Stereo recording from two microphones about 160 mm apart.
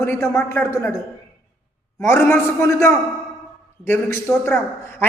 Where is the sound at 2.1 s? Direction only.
15° left (ahead or behind).